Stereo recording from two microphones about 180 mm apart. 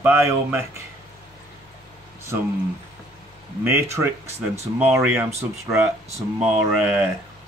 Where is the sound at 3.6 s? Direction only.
10° right (ahead or behind).